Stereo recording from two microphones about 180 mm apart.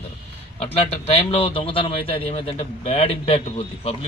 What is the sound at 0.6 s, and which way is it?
A man's voice, 35° left (ahead or behind).